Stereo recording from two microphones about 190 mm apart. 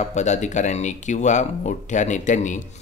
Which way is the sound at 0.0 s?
35° left (ahead or behind).